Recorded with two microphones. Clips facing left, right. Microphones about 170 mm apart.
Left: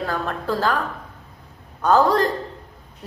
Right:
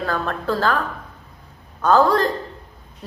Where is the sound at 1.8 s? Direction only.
15° left (ahead or behind).